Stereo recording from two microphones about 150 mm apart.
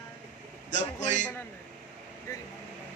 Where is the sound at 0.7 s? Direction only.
50° left (ahead or behind).